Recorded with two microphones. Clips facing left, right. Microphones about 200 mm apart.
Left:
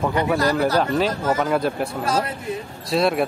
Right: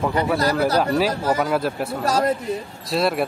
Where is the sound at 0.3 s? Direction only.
5° right (ahead or behind).